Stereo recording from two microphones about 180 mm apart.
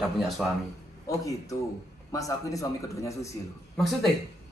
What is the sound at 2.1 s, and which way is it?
Speech, 20° left (ahead or behind).